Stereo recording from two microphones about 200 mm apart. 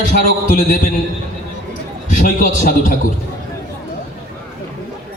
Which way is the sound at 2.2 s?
45° left (ahead or behind).